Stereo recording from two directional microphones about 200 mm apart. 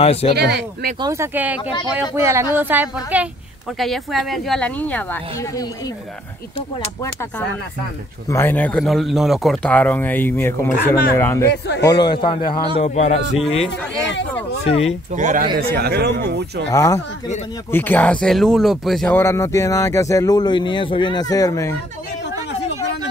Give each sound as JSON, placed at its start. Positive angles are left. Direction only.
{"t": 0.0, "sound": "a man's voice", "side_deg": 30}
{"t": 0.3, "sound": "a man's voice", "side_deg": -55}
{"t": 1.0, "sound": "a woman's voice", "side_deg": -15}
{"t": 8.3, "sound": "a man's voice", "side_deg": 10}
{"t": 14.6, "sound": "a man's voice", "side_deg": 30}
{"t": 15.1, "sound": "a man's voice", "side_deg": -40}
{"t": 16.7, "sound": "speech", "side_deg": 15}